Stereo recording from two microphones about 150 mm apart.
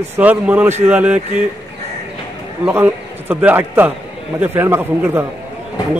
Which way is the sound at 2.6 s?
15° right (ahead or behind).